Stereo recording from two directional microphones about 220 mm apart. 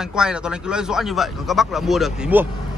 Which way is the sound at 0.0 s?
5° right (ahead or behind).